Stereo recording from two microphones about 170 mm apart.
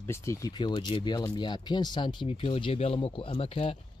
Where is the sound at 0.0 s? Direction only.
15° left (ahead or behind).